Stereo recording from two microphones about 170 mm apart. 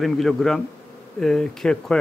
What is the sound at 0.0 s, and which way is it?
Speech, centre (ahead or behind).